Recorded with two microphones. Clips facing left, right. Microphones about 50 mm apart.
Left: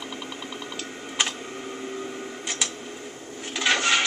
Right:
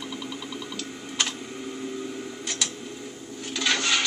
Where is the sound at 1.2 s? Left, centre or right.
Left.